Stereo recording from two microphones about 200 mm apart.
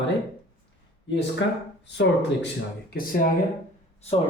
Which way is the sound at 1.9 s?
60° left (ahead or behind).